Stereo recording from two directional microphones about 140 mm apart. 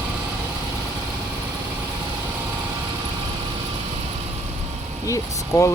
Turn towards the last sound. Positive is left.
turn(degrees=20)  # may be behind; listen again after turning